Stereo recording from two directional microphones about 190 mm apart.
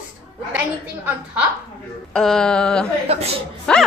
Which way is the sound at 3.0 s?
35° right (ahead or behind).